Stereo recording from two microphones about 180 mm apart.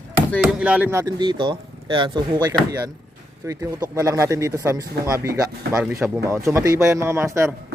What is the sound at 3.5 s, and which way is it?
Speech, 15° right (ahead or behind).